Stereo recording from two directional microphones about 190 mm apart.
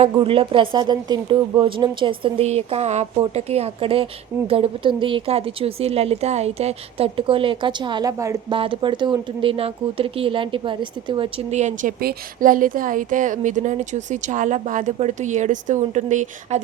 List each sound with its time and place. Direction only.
0.0 s speech: 30° right (ahead or behind)